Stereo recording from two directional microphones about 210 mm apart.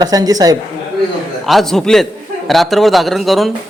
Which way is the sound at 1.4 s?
Centre (ahead or behind).